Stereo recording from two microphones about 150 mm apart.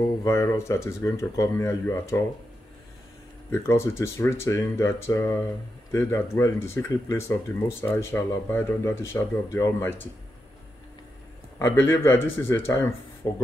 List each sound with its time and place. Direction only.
0.0 s speech: 20° left (ahead or behind)
3.5 s speech: 20° left (ahead or behind)
11.5 s speech: 15° left (ahead or behind)